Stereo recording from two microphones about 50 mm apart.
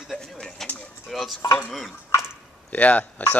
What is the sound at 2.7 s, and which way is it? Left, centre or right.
Speech, left.